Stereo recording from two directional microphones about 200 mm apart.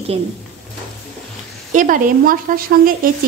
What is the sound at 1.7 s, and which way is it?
Speech, 45° right (ahead or behind).